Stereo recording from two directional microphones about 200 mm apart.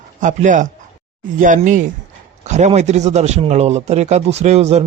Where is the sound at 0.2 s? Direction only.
40° right (ahead or behind).